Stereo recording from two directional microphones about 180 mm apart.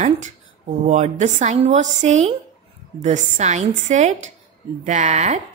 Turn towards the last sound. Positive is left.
turn(degrees=-40)  # may be behind; listen again after turning